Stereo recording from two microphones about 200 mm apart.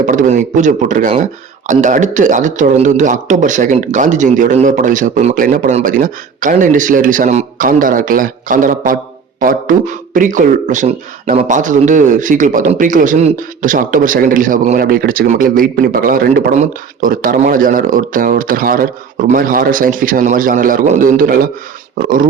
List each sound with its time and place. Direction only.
0.0 s speech: 40° right (ahead or behind)